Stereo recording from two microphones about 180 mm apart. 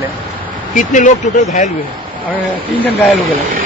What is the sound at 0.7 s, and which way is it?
Speech, 45° left (ahead or behind).